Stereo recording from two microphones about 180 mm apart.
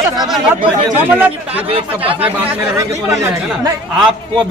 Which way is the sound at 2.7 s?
15° right (ahead or behind).